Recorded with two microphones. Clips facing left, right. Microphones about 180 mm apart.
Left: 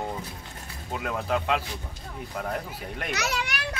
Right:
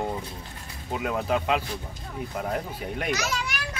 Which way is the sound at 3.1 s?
65° left (ahead or behind).